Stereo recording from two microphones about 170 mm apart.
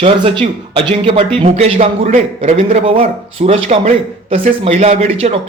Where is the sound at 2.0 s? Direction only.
50° right (ahead or behind).